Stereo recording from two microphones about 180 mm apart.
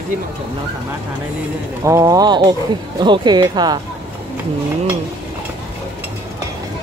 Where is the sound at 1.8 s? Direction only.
15° right (ahead or behind).